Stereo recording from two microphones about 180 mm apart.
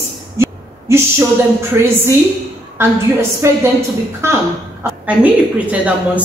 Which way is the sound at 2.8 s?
15° right (ahead or behind).